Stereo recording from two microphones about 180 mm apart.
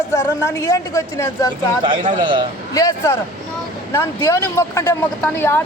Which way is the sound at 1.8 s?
25° right (ahead or behind).